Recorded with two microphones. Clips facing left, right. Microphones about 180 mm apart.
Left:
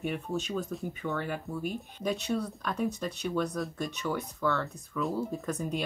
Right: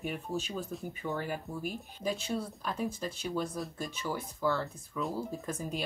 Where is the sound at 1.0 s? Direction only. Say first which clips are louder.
Left 2 dB; 20° right (ahead or behind).